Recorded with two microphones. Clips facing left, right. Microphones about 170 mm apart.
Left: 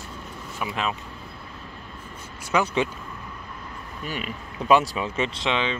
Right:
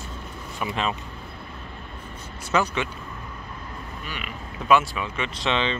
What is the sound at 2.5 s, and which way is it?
Speech, 10° left (ahead or behind).